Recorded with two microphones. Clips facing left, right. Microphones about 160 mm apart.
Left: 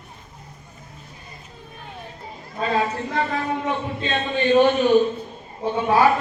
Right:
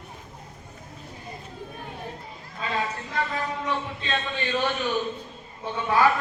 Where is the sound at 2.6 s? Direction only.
50° left (ahead or behind).